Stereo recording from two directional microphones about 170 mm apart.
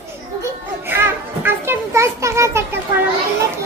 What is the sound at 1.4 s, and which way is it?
Children playing, 15° right (ahead or behind).